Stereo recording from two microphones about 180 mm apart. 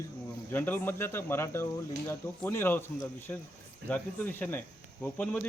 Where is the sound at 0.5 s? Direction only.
10° left (ahead or behind).